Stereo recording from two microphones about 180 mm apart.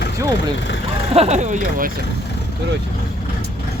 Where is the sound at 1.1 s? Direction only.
35° right (ahead or behind).